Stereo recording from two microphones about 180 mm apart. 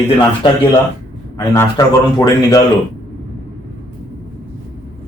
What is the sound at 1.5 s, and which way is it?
Speech, 20° left (ahead or behind).